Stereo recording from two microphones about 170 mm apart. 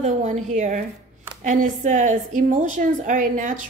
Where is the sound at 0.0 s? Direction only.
45° right (ahead or behind).